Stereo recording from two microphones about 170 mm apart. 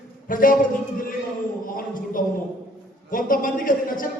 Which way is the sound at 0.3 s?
55° left (ahead or behind).